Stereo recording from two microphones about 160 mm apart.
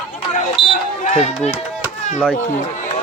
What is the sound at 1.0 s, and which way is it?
Speech, 45° left (ahead or behind).